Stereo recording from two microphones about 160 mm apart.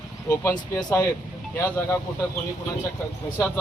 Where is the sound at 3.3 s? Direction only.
15° left (ahead or behind).